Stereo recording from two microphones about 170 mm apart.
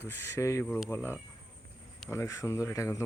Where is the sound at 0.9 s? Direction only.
15° left (ahead or behind).